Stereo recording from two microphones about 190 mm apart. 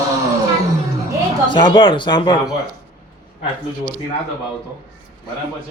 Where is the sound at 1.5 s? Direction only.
25° left (ahead or behind).